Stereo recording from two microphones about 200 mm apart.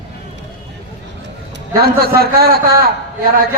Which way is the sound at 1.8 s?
50° right (ahead or behind).